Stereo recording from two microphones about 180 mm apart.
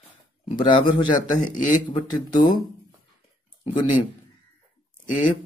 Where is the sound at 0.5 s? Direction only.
25° left (ahead or behind).